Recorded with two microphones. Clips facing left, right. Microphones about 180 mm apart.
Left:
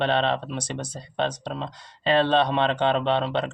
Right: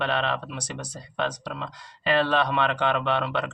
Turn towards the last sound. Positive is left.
turn(degrees=25)  # may be behind; listen again after turning